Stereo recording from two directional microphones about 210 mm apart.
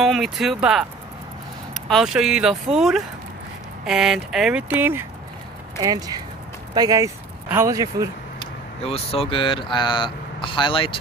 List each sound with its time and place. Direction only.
0.0 s speech: centre (ahead or behind)
8.4 s speech: 25° left (ahead or behind)